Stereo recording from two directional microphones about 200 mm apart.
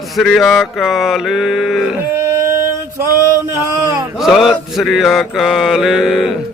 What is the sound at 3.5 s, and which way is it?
Speech, 15° right (ahead or behind).